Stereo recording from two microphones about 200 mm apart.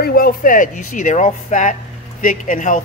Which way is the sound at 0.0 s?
45° left (ahead or behind).